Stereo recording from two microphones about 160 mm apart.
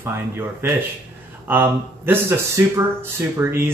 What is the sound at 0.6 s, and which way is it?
Speech, 15° right (ahead or behind).